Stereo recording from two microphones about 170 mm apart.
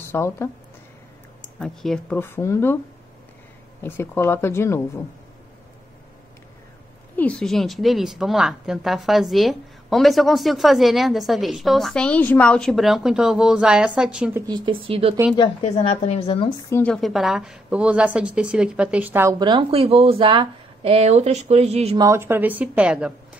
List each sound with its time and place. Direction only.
0.0 s speech: 15° left (ahead or behind)
1.6 s a woman's voice: 5° left (ahead or behind)
3.8 s speech: 15° left (ahead or behind)
7.2 s a woman's voice: 5° left (ahead or behind)
14.4 s speech: 25° right (ahead or behind)
15.6 s a woman's voice: 35° left (ahead or behind); by 16.8 s 20° left (ahead or behind)
16.8 s a woman's voice: centre (ahead or behind)
19.3 s speech: 25° right (ahead or behind)
21.9 s a woman's voice: 20° right (ahead or behind)